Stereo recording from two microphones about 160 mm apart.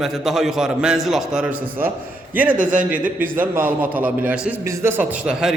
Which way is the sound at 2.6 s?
55° right (ahead or behind).